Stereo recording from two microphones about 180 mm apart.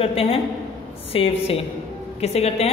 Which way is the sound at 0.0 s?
30° left (ahead or behind).